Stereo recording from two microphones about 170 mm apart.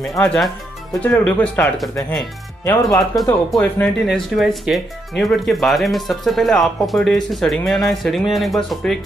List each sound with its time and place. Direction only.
0.2 s speech: centre (ahead or behind)
2.6 s speech: 15° left (ahead or behind)
4.0 s speech: centre (ahead or behind)